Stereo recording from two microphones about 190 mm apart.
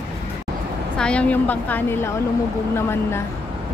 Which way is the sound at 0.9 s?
5° left (ahead or behind).